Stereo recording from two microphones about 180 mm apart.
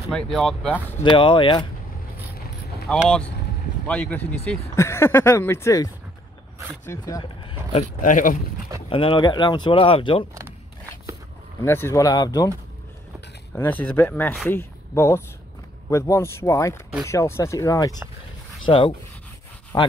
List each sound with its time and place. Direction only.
0.1 s speech: centre (ahead or behind)
1.0 s speech: 25° left (ahead or behind)
2.9 s speech: 5° left (ahead or behind)
6.9 s speech: 20° left (ahead or behind)
7.7 s speech: 45° left (ahead or behind)
8.8 s speech: 30° left (ahead or behind)
11.6 s speech: 15° left (ahead or behind)
13.6 s speech: 10° left (ahead or behind)
18.7 s speech: 30° left (ahead or behind)